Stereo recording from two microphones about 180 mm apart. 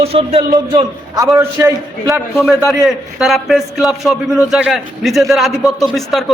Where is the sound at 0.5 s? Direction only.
20° right (ahead or behind).